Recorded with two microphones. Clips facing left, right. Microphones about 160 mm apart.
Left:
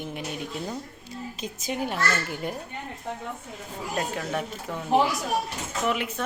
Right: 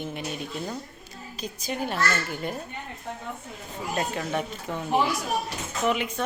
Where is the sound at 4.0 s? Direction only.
Centre (ahead or behind).